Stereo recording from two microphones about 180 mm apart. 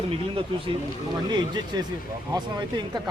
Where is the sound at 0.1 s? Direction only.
30° right (ahead or behind).